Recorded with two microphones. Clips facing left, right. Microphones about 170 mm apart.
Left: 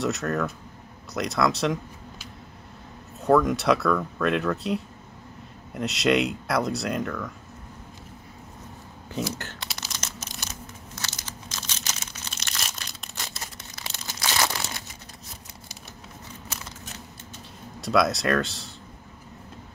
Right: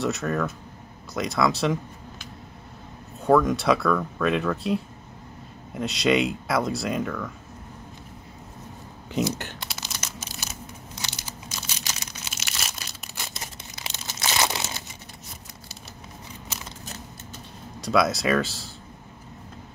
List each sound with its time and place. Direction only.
0.0 s speech: centre (ahead or behind)
3.2 s speech: centre (ahead or behind)
9.1 s speech: 20° right (ahead or behind)
9.9 s a sound: 5° right (ahead or behind)
11.0 s crumpling: 10° right (ahead or behind)
13.4 s crumpling: 15° right (ahead or behind)
17.7 s speech: centre (ahead or behind)